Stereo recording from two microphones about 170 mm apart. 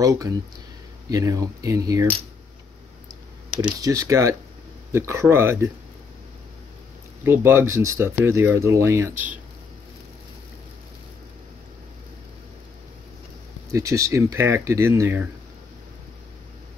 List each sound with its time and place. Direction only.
0.0 s speech: 20° right (ahead or behind)
3.8 s speech: 20° right (ahead or behind)
7.2 s speech: 15° right (ahead or behind)
13.7 s speech: 20° right (ahead or behind)